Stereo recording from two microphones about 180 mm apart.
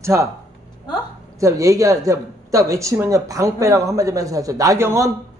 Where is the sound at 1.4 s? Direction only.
20° right (ahead or behind).